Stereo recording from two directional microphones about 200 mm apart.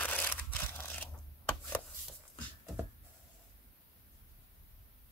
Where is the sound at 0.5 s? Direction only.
10° left (ahead or behind).